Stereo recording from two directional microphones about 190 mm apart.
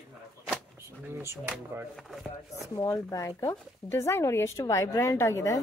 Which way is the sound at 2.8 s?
15° left (ahead or behind).